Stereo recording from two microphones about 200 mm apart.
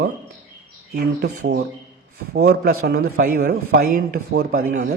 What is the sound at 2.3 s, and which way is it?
A man's voice, 55° right (ahead or behind).